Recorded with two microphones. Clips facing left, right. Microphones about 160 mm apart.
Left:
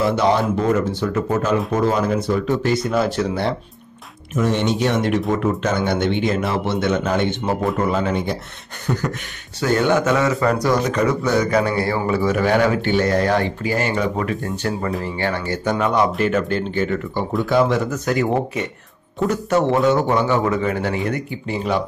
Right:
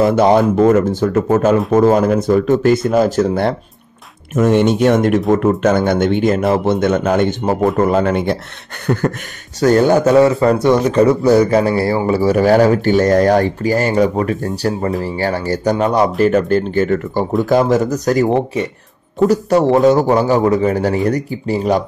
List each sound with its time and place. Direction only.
0.0 s speech: 50° right (ahead or behind)
9.6 s speech: 40° right (ahead or behind)